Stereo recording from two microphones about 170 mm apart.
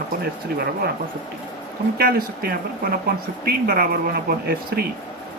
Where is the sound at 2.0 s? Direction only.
60° right (ahead or behind).